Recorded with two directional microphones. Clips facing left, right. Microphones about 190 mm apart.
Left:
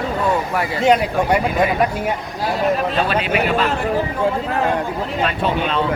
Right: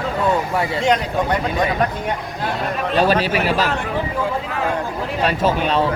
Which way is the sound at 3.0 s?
35° right (ahead or behind).